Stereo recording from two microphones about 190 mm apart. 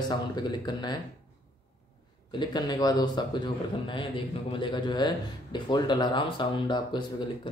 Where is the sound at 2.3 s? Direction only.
20° left (ahead or behind).